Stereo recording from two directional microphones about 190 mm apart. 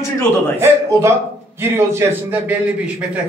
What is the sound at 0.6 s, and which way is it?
A man's voice, 15° right (ahead or behind).